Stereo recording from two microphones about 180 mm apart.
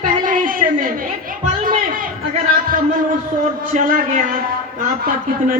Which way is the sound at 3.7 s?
50° right (ahead or behind).